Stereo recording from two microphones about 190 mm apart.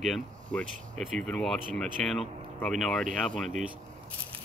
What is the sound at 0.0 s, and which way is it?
Speech, 5° left (ahead or behind).